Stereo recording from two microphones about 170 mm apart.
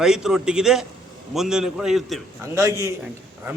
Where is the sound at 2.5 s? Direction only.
20° right (ahead or behind).